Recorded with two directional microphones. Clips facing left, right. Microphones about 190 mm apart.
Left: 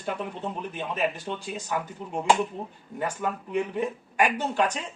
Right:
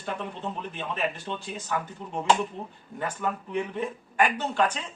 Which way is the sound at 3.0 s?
10° left (ahead or behind).